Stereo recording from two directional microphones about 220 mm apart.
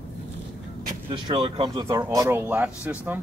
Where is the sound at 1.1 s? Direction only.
25° right (ahead or behind).